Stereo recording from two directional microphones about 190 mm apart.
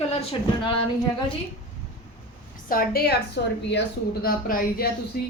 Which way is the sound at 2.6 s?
50° left (ahead or behind).